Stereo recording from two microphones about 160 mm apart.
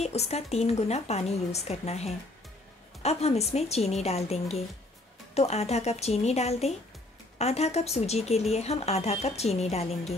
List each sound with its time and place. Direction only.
0.0 s speech: 40° left (ahead or behind)